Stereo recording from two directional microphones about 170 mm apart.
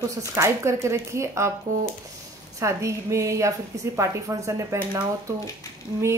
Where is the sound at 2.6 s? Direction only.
15° right (ahead or behind).